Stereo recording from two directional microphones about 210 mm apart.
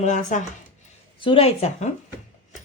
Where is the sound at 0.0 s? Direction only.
35° left (ahead or behind).